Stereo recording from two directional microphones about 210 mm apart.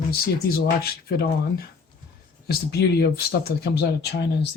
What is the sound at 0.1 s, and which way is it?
Speech, 45° left (ahead or behind).